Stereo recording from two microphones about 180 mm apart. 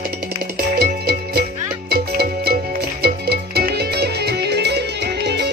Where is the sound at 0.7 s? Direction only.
60° right (ahead or behind).